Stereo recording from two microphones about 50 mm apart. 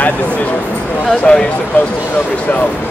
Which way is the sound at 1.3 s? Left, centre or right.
Left.